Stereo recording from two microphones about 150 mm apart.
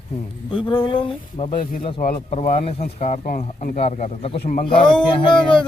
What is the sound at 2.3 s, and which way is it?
A man's voice, 50° left (ahead or behind).